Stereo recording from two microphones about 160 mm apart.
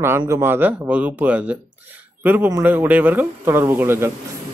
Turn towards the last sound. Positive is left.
turn(degrees=-15)  # may be behind; listen again after turning